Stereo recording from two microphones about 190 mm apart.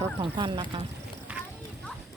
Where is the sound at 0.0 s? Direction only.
25° right (ahead or behind).